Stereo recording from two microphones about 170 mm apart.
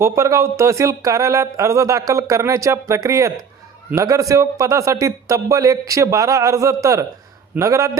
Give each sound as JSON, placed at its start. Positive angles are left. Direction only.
{"t": 0.0, "sound": "a man's voice", "side_deg": -15}